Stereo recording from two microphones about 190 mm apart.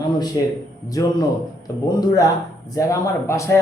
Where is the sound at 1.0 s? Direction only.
15° left (ahead or behind).